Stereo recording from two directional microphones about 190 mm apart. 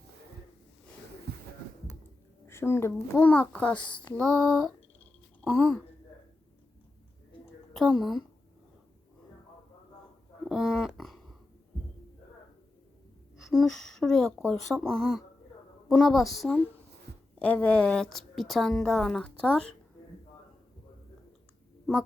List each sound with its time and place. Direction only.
1.3 s music: 60° right (ahead or behind)
2.5 s a child's voice: 15° left (ahead or behind)
5.4 s a sound: 10° left (ahead or behind)
7.7 s a woman's voice: centre (ahead or behind)
10.5 s speech: centre (ahead or behind)
13.5 s a woman's voice: centre (ahead or behind)